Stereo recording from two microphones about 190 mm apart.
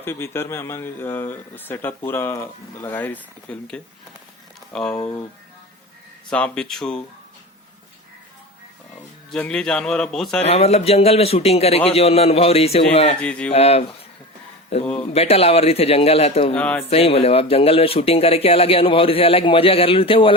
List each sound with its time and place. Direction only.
0.0 s a man's voice: 10° left (ahead or behind)
6.3 s a man's voice: 5° left (ahead or behind)
9.3 s a man's voice: 5° left (ahead or behind)
10.4 s speech: 35° left (ahead or behind)
13.1 s a man's voice: 5° left (ahead or behind)
13.5 s speech: 35° left (ahead or behind)
16.6 s speech: 5° left (ahead or behind)
16.9 s speech: 30° left (ahead or behind)